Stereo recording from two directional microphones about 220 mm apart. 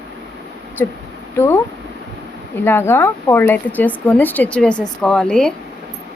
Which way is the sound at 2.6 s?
10° left (ahead or behind).